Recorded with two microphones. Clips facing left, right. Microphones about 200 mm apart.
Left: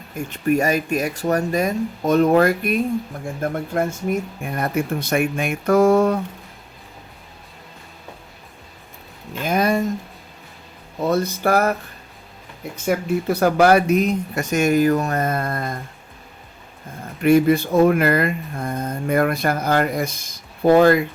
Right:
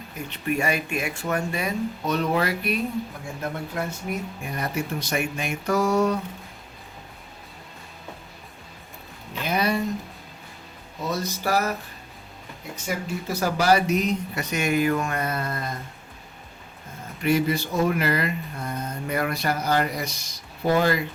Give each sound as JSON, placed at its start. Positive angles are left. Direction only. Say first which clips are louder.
{"t": 0.3, "sound": "speech", "louder": "left 7 dB", "side_deg": 45}
{"t": 9.4, "sound": "a sound", "louder": "left 5 dB", "side_deg": 45}
{"t": 11.0, "sound": "speech", "louder": "left 8 dB", "side_deg": 55}
{"t": 12.7, "sound": "speech", "louder": "left 9 dB", "side_deg": 60}
{"t": 17.2, "sound": "speech", "louder": "left 8 dB", "side_deg": 55}